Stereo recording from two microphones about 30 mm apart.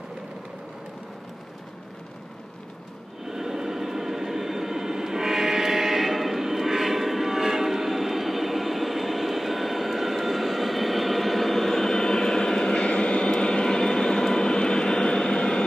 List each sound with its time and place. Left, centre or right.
3.3 s vehicle: centre; by 13.2 s left
13.2 s vehicle: left